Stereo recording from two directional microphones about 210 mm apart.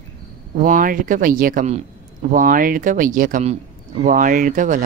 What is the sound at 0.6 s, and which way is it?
Speech, 40° right (ahead or behind).